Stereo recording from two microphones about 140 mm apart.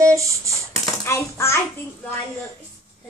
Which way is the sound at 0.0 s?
20° right (ahead or behind).